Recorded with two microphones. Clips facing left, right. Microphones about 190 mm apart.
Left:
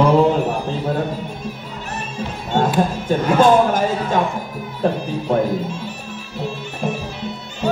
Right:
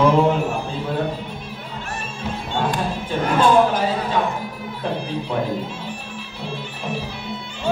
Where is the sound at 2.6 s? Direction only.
45° left (ahead or behind).